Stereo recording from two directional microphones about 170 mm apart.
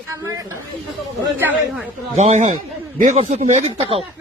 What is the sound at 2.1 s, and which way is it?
Speech, 40° right (ahead or behind).